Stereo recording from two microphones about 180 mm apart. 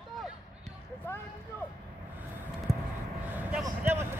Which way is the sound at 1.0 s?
10° left (ahead or behind).